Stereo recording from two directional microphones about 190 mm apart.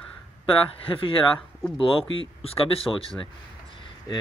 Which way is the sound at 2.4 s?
30° left (ahead or behind).